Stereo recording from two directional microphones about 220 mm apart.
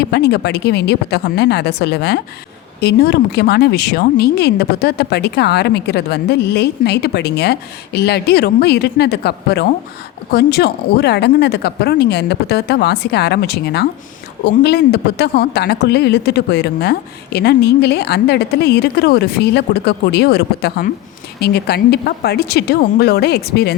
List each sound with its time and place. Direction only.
0.0 s speech: 50° left (ahead or behind)